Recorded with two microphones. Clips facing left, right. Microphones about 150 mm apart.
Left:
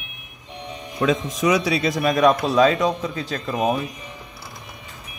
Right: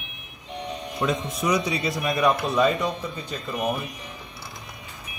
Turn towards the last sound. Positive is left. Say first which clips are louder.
# left 5 dB
turn(degrees=90)